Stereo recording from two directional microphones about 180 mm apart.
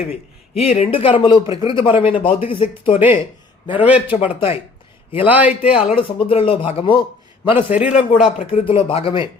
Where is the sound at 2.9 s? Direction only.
10° right (ahead or behind).